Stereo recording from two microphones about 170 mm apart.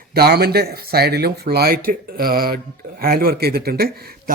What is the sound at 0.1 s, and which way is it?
A man's voice, 65° right (ahead or behind).